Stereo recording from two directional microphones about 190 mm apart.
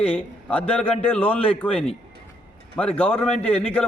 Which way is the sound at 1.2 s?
10° left (ahead or behind).